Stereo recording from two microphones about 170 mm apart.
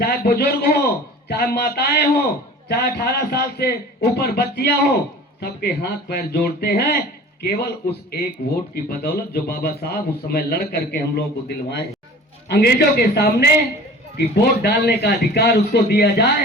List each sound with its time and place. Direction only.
0.0 s a man's voice: 65° left (ahead or behind)
8.4 s speech: 45° left (ahead or behind)
8.7 s a man's voice: 65° left (ahead or behind)